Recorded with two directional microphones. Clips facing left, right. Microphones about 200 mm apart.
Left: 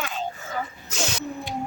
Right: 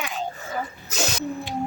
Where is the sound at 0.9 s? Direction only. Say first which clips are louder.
Right 2 dB; 40° right (ahead or behind).